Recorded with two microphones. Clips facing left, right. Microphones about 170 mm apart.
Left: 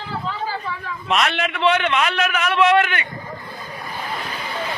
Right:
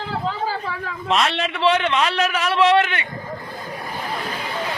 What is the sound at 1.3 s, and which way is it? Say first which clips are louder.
A man's voice: even; 30° right (ahead or behind).